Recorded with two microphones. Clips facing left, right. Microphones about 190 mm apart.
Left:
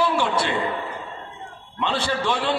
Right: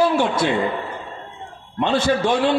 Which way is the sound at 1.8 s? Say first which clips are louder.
Right 6 dB; 45° right (ahead or behind).